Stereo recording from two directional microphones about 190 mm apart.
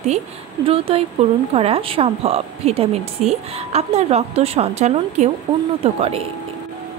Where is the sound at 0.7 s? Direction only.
30° right (ahead or behind).